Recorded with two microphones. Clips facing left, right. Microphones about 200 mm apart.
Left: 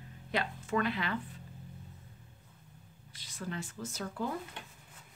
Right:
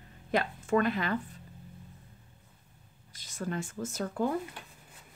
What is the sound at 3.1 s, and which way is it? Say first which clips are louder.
Speech: right 5 dB; 45° right (ahead or behind).